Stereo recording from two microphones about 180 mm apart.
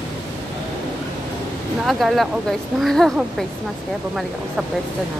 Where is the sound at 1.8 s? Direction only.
Centre (ahead or behind).